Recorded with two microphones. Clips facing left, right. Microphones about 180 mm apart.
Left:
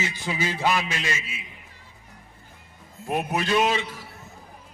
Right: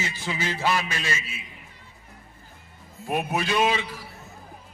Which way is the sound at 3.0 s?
Centre (ahead or behind).